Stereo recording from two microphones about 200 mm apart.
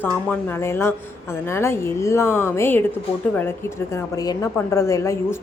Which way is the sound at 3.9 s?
15° left (ahead or behind).